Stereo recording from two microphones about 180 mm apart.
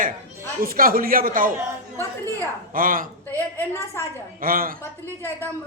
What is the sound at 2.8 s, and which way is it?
Speech, 50° right (ahead or behind).